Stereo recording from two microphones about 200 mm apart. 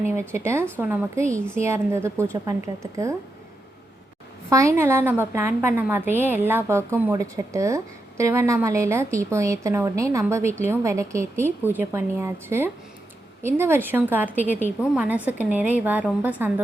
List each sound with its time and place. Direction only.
0.1 s a woman's voice: 15° right (ahead or behind)
4.4 s a woman's voice: 15° right (ahead or behind)